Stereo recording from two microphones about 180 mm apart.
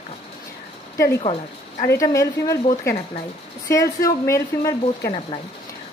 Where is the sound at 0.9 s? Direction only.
15° left (ahead or behind).